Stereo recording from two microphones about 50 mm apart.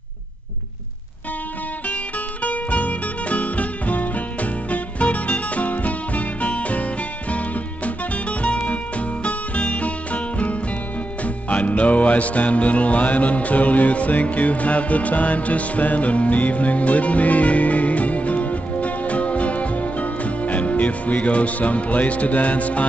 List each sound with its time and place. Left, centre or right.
1.9 s music: left